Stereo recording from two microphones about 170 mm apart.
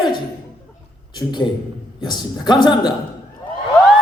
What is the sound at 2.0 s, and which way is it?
Speech, 25° left (ahead or behind).